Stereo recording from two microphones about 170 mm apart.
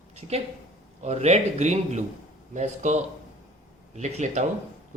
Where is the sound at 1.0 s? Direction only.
40° right (ahead or behind).